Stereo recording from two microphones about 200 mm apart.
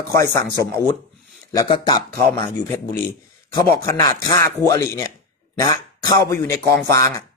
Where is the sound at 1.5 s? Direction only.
20° left (ahead or behind).